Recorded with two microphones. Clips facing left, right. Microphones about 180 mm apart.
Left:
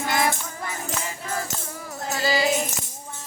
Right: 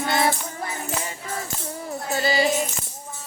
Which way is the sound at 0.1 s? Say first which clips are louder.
Right 1 dB; 30° right (ahead or behind).